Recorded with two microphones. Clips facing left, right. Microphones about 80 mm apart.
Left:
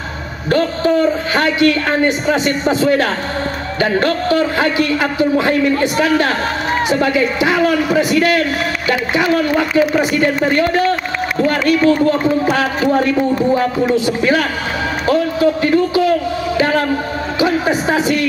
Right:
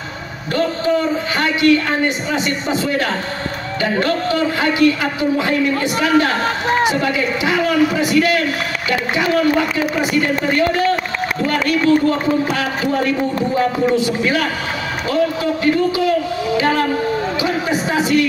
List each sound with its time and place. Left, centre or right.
0.5 s a man's voice: left
12.5 s a man's voice: left
14.0 s a man's voice: left
15.6 s a man's voice: left
17.4 s a sound: left